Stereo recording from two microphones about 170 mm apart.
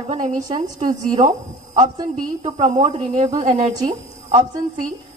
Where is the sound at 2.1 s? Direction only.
40° right (ahead or behind).